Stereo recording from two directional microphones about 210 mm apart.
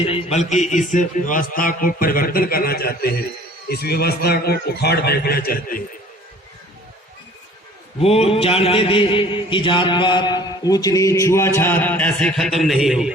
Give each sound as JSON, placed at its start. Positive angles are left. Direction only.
{"t": 0.0, "sound": "a man's voice", "side_deg": 30}
{"t": 7.9, "sound": "mantra", "side_deg": 30}